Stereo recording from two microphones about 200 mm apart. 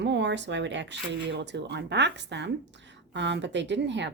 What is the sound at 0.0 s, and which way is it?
Speech, 60° right (ahead or behind).